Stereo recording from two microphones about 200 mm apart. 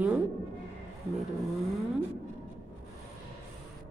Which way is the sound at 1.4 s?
Centre (ahead or behind).